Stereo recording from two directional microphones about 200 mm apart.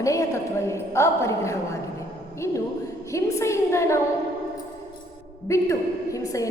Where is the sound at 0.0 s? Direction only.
15° left (ahead or behind).